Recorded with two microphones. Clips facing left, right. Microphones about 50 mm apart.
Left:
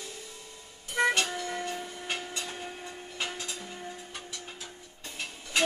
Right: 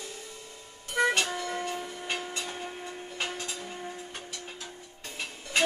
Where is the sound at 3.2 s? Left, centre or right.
Right.